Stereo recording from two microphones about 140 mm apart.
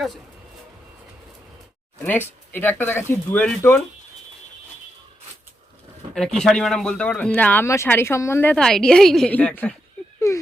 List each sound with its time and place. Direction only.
2.0 s speech: 15° left (ahead or behind)
6.1 s speech: 5° left (ahead or behind)
8.5 s a woman's voice: 5° left (ahead or behind)
10.2 s a sound: 20° left (ahead or behind)